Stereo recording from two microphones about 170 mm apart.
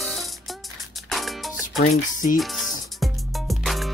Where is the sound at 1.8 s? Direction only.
45° left (ahead or behind).